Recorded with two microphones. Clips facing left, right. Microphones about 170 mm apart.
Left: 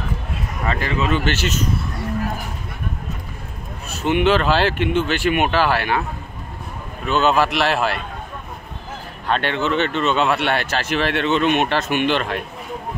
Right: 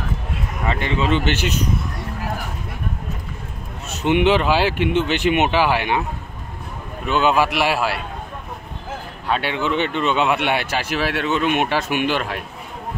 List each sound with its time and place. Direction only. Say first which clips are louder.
0.7 s speech: right 1 dB; 25° right (ahead or behind)
3.9 s speech: right 1 dB; 20° right (ahead or behind)
7.1 s speech: even; 15° right (ahead or behind)
9.3 s speech: left 1 dB; 10° right (ahead or behind)